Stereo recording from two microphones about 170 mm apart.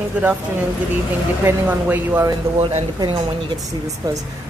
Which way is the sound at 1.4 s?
15° right (ahead or behind).